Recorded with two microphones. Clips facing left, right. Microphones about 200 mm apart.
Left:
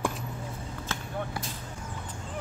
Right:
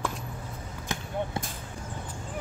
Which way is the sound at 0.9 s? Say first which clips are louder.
Right 3 dB; 15° right (ahead or behind).